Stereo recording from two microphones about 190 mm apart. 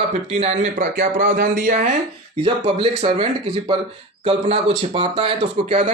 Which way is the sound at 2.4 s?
30° right (ahead or behind).